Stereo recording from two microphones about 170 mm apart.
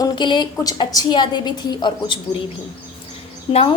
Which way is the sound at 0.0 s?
25° left (ahead or behind).